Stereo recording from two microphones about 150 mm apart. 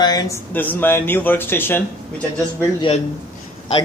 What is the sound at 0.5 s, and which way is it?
Speech, 10° left (ahead or behind).